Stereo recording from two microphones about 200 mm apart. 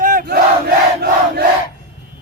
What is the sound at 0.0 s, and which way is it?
Battle cry, 40° right (ahead or behind).